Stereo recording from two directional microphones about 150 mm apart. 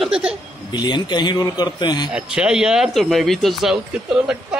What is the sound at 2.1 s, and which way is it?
Speech, 5° right (ahead or behind).